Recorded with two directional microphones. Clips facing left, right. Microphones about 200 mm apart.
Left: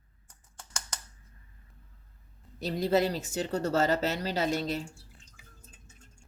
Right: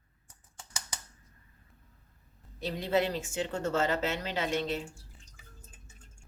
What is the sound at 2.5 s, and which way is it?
Speech, 40° left (ahead or behind).